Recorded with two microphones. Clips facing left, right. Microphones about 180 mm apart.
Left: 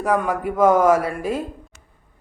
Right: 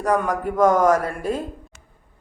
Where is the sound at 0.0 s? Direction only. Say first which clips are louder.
Even; 5° left (ahead or behind).